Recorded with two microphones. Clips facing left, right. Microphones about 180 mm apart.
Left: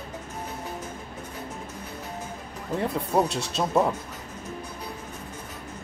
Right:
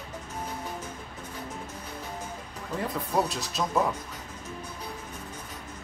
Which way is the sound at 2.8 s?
30° left (ahead or behind).